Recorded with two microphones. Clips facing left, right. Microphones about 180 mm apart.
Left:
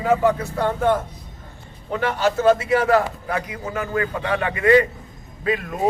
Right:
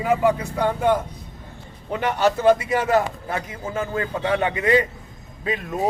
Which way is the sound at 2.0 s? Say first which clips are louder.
Even; 15° right (ahead or behind).